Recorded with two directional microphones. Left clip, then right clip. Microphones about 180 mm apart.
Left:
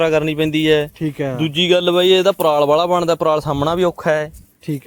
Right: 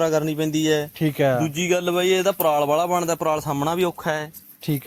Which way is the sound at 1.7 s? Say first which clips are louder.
Left 7 dB; 50° left (ahead or behind).